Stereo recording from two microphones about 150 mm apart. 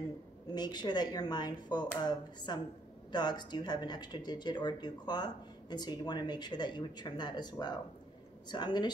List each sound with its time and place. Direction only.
0.6 s speech: 30° left (ahead or behind)